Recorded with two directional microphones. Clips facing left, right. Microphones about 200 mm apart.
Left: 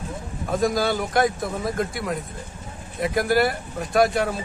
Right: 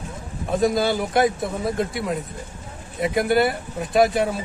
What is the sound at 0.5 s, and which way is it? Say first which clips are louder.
Speech: right 2 dB; centre (ahead or behind).